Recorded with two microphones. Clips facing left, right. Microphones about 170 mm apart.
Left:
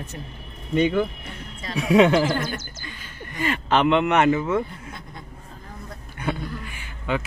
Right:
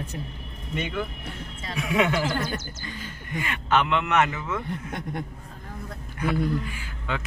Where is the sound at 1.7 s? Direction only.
30° left (ahead or behind).